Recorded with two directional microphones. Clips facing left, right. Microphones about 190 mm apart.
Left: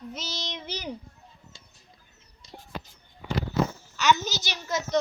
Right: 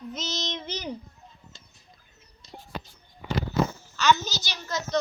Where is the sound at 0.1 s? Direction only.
10° left (ahead or behind).